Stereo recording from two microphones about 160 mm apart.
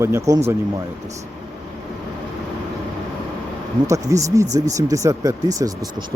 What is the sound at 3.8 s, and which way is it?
Speech, 20° right (ahead or behind).